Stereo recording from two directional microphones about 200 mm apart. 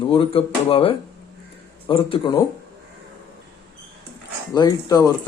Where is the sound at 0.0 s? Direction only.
25° left (ahead or behind).